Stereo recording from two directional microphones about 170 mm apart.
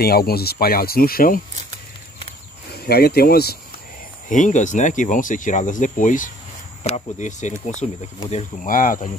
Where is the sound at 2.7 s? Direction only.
65° left (ahead or behind).